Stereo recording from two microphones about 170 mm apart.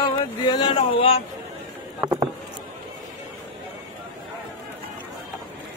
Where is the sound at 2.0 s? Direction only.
20° right (ahead or behind).